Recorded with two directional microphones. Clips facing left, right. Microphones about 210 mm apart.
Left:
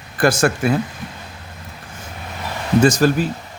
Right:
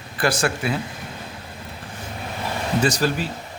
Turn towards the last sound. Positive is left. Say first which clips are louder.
# left 7 dB
turn(degrees=45)  # may be behind; listen again after turning